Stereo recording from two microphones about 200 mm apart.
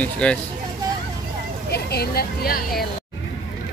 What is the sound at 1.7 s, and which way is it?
Speech, 50° left (ahead or behind).